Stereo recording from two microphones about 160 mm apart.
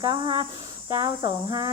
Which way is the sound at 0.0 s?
30° right (ahead or behind).